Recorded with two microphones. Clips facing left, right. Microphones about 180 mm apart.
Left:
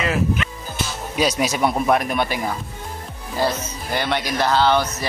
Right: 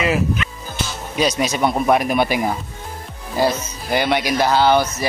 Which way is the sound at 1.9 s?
5° right (ahead or behind).